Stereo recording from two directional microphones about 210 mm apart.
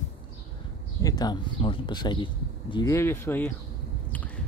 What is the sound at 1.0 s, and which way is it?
Speech, 20° left (ahead or behind).